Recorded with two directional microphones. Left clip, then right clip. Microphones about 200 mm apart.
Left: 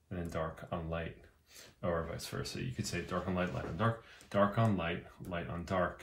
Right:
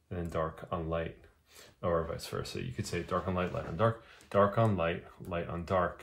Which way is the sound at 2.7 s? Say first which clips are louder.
Right 5 dB; 25° right (ahead or behind).